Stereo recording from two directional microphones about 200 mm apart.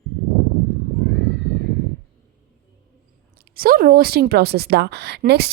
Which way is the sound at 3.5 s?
50° right (ahead or behind).